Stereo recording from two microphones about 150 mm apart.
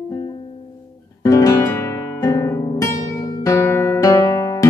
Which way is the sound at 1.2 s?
20° left (ahead or behind).